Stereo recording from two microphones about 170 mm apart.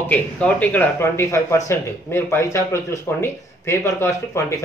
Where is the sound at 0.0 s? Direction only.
10° left (ahead or behind).